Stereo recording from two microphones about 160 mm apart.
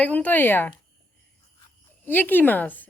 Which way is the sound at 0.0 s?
10° left (ahead or behind).